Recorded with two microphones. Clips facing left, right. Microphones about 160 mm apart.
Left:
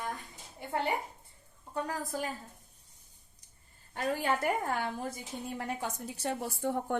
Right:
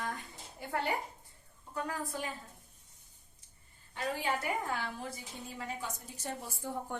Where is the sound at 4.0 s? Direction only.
50° left (ahead or behind).